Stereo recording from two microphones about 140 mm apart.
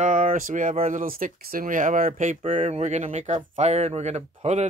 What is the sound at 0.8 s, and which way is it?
Speech, 80° right.